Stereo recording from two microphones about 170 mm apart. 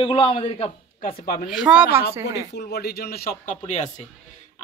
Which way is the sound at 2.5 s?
70° left (ahead or behind).